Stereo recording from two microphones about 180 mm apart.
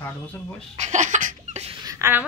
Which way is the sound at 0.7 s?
40° right (ahead or behind).